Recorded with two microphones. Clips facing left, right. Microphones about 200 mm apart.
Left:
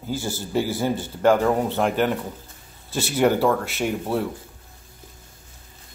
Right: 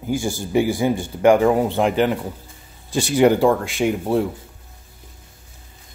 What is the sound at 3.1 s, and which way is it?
Speech, 10° right (ahead or behind).